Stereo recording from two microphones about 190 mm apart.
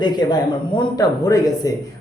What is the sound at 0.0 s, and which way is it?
A man's voice, 20° left (ahead or behind).